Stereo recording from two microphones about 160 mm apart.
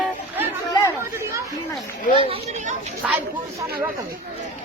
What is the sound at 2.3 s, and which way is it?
Speech, 45° right (ahead or behind).